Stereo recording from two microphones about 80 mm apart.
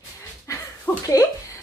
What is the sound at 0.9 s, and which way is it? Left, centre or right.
Speech, left.